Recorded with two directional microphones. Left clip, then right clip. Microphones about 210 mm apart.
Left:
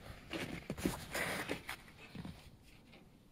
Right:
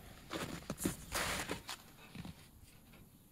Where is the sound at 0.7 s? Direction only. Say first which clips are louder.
Left 1 dB; 15° left (ahead or behind).